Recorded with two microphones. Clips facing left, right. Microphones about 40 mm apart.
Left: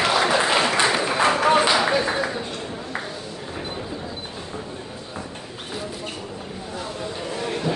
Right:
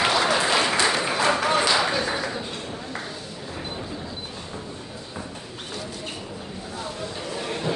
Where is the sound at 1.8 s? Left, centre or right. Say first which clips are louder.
Left 4 dB; centre.